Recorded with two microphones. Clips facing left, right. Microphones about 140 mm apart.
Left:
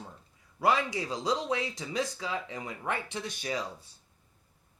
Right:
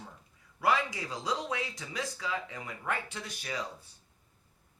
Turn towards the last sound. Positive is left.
turn(degrees=25)  # may be behind; listen again after turning